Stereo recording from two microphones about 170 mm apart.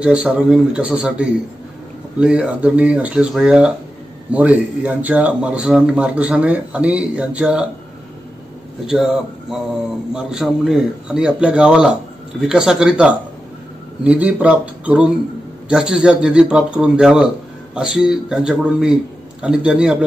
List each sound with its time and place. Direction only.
0.0 s speech: 5° right (ahead or behind)
8.8 s speech: 5° right (ahead or behind)